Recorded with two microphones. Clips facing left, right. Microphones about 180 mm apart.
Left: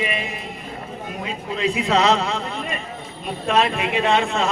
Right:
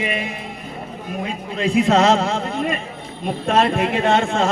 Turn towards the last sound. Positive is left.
turn(degrees=-50)  # may be behind; listen again after turning